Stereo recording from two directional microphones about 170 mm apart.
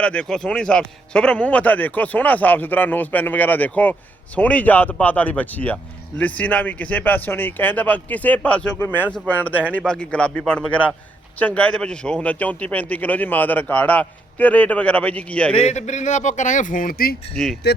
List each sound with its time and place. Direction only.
0.0 s speech: 5° left (ahead or behind)
15.5 s speech: 40° left (ahead or behind); by 17.2 s 60° left (ahead or behind)
17.3 s speech: centre (ahead or behind)